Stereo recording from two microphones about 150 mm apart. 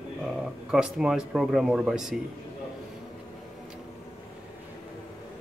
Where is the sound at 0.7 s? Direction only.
5° right (ahead or behind).